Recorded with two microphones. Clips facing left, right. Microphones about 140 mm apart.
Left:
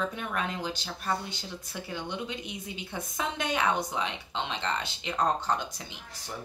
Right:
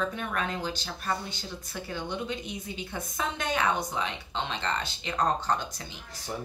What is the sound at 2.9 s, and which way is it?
Speech, 20° left (ahead or behind).